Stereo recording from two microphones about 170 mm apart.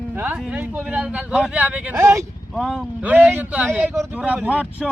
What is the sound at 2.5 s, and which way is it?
Speech, 5° right (ahead or behind).